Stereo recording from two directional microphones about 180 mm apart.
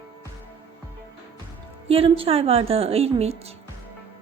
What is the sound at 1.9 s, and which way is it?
A woman's voice, 30° right (ahead or behind).